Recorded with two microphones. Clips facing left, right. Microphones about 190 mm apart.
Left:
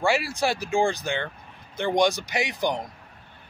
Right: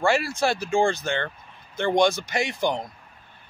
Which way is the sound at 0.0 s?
15° left (ahead or behind).